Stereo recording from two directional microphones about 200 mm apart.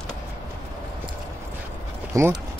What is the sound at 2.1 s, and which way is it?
Speech, 15° right (ahead or behind).